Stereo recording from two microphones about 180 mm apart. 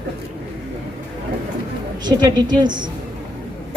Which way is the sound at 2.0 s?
25° right (ahead or behind).